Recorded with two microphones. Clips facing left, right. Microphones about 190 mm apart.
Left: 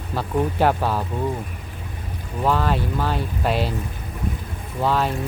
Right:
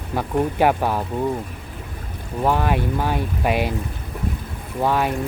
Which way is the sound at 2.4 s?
15° right (ahead or behind).